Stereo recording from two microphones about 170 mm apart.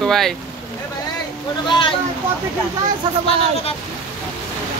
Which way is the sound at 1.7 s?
30° left (ahead or behind).